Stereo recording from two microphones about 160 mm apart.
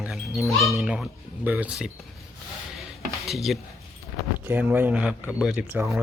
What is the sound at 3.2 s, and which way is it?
Speech, centre (ahead or behind).